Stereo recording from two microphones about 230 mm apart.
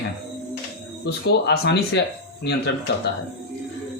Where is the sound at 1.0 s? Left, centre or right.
Left.